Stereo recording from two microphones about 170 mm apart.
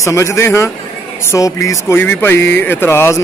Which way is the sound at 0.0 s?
15° left (ahead or behind).